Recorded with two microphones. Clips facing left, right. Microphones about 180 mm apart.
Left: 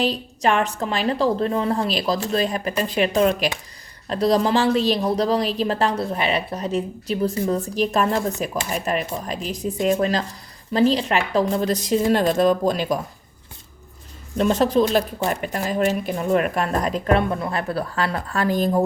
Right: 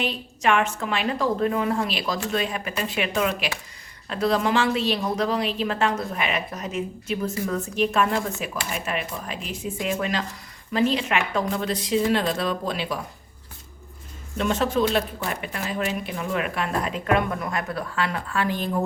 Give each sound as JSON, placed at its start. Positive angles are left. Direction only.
{"t": 0.0, "sound": "speech", "side_deg": 35}
{"t": 14.3, "sound": "speech", "side_deg": 35}